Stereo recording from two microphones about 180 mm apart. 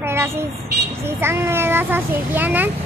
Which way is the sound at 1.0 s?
15° right (ahead or behind).